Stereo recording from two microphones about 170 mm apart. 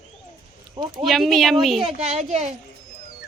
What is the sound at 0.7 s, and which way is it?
Speech, 25° right (ahead or behind).